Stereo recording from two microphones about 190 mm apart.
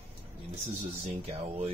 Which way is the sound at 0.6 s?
30° right (ahead or behind).